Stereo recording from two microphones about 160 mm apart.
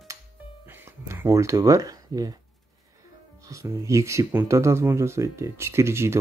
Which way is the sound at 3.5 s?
20° right (ahead or behind).